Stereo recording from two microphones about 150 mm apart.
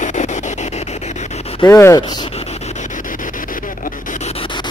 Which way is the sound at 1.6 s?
20° left (ahead or behind).